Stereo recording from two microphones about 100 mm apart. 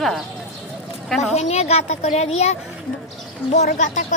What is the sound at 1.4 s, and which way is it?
A woman's voice, 90° left.